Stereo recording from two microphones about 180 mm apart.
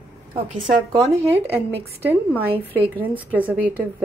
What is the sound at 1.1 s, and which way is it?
Speech, 15° right (ahead or behind).